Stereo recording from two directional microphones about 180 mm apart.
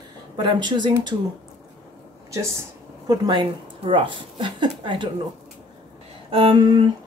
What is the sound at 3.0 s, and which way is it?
A woman's voice, 25° right (ahead or behind).